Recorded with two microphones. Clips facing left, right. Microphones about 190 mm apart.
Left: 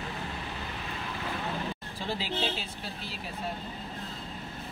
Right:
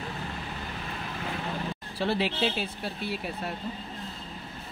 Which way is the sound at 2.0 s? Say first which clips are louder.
Right 6 dB; 65° right (ahead or behind).